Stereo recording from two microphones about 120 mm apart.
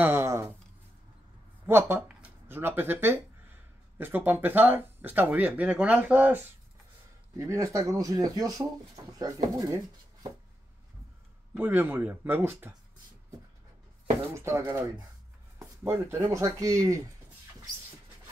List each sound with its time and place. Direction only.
0.0 s a sound: 20° right (ahead or behind)
1.7 s speech: 20° right (ahead or behind)
7.3 s speech: 30° right (ahead or behind)
11.5 s speech: 15° right (ahead or behind)
14.3 s speech: 20° right (ahead or behind)